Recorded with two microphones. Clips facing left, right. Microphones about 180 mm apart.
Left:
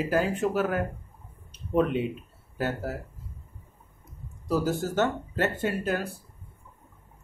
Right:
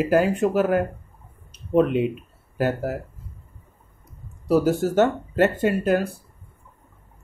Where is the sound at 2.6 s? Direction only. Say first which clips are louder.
Right 6 dB; 15° right (ahead or behind).